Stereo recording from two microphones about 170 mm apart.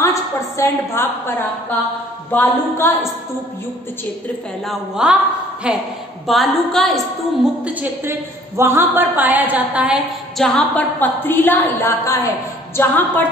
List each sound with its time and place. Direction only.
0.0 s a woman's voice: 15° left (ahead or behind)
2.3 s a woman's voice: 15° left (ahead or behind)
4.6 s a woman's voice: 5° right (ahead or behind)
7.6 s a woman's voice: 10° right (ahead or behind); by 13.3 s 10° left (ahead or behind)